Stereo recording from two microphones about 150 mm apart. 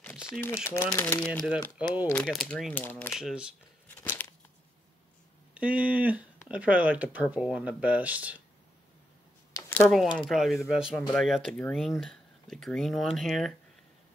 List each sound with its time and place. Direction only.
0.3 s speech: 15° left (ahead or behind)
1.8 s speech: 10° right (ahead or behind)
2.2 s speech: 5° left (ahead or behind)
3.2 s speech: 5° right (ahead or behind)
4.0 s a sound: 10° left (ahead or behind)
5.5 s speech: 10° right (ahead or behind)
9.5 s a sound: 20° left (ahead or behind)
9.8 s speech: 5° left (ahead or behind)